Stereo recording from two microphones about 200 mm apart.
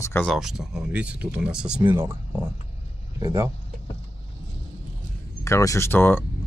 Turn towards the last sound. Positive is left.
turn(degrees=10)  # may be behind; listen again after turning